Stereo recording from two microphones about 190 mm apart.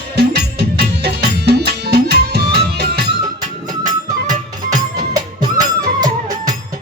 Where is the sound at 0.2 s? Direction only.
60° right (ahead or behind).